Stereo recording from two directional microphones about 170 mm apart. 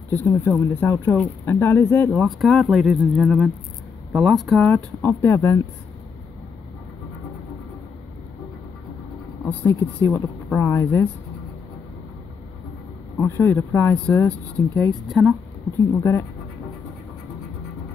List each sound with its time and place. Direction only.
0.1 s speech: 10° left (ahead or behind)
2.2 s speech: centre (ahead or behind)
9.5 s speech: 10° left (ahead or behind)
13.2 s speech: 15° left (ahead or behind)
15.0 s speech: centre (ahead or behind)
16.0 s speech: 15° left (ahead or behind)